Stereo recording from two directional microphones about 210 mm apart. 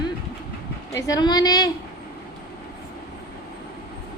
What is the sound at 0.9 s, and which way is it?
Speech, 15° left (ahead or behind).